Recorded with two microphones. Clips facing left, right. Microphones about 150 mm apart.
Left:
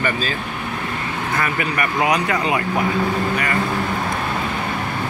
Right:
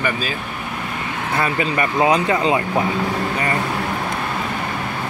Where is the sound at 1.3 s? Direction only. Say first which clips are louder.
Right 3 dB; 25° right (ahead or behind).